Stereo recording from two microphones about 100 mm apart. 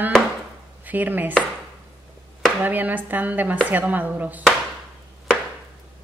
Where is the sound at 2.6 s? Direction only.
20° right (ahead or behind).